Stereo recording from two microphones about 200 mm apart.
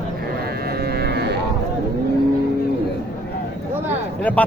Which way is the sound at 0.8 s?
50° right (ahead or behind).